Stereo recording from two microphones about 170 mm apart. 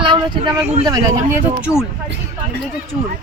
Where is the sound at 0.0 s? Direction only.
30° right (ahead or behind).